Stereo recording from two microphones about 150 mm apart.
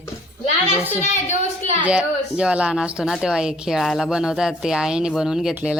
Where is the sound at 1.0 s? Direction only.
50° left (ahead or behind).